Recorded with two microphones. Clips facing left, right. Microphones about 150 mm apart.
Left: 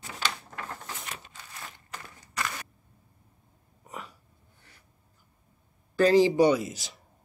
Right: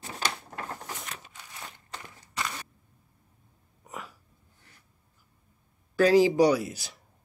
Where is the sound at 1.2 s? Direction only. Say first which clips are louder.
Even; 15° right (ahead or behind).